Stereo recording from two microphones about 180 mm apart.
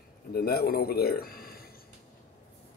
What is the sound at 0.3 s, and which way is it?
Speech, 60° left (ahead or behind).